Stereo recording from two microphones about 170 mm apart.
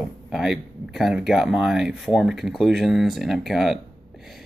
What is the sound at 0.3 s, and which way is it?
Speech, centre (ahead or behind).